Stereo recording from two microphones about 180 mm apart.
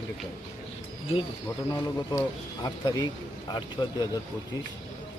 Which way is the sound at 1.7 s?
20° left (ahead or behind).